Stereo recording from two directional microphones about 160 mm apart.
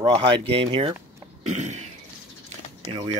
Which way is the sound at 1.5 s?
45° right (ahead or behind).